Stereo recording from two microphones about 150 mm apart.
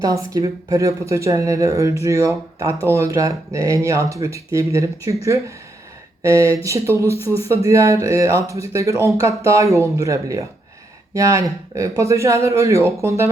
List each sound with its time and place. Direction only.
0.0 s speech: 25° right (ahead or behind)